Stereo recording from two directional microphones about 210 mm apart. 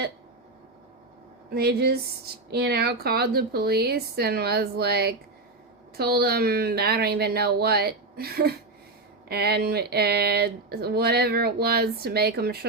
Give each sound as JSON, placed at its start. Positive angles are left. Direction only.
{"t": 1.5, "sound": "speech", "side_deg": -50}